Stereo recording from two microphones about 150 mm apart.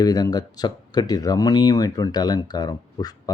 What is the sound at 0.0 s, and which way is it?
Speech, 25° left (ahead or behind).